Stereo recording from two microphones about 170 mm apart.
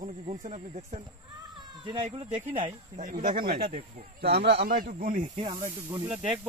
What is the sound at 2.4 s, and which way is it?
Speech, 45° right (ahead or behind).